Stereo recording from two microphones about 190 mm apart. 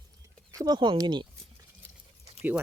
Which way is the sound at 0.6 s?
25° right (ahead or behind).